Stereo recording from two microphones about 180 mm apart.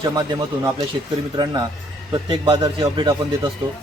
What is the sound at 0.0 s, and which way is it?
Speech, 20° right (ahead or behind).